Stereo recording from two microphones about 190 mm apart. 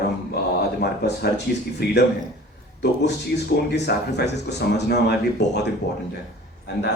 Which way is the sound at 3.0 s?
60° left (ahead or behind).